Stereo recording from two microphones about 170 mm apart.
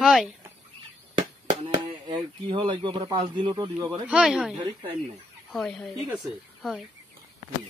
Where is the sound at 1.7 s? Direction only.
30° right (ahead or behind).